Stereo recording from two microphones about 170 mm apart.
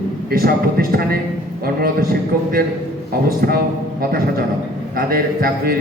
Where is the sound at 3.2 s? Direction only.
60° right (ahead or behind).